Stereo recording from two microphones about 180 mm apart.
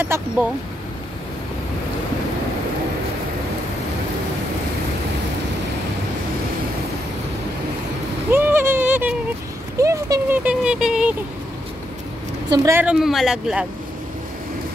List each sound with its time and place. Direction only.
0.0 s speech: 10° right (ahead or behind)
8.3 s a sound: 10° right (ahead or behind)
9.8 s speech: 20° right (ahead or behind)
10.4 s speech: 5° right (ahead or behind)
12.4 s speech: 15° right (ahead or behind)
12.8 s speech: centre (ahead or behind)